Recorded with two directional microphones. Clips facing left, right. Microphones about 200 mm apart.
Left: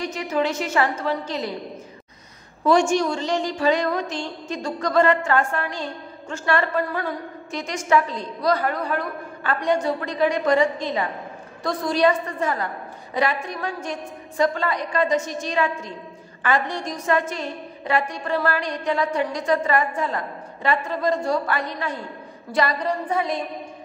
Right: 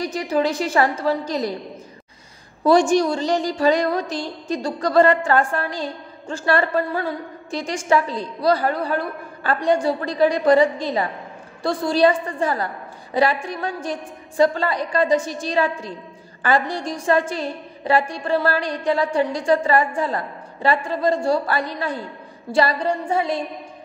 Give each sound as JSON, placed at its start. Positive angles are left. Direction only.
{"t": 0.0, "sound": "a woman's voice", "side_deg": -35}
{"t": 2.6, "sound": "a woman's voice", "side_deg": -35}